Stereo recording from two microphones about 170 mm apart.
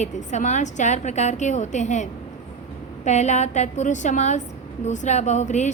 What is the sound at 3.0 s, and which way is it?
A woman's voice, 45° left (ahead or behind).